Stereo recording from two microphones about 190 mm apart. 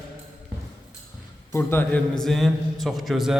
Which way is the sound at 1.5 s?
10° left (ahead or behind).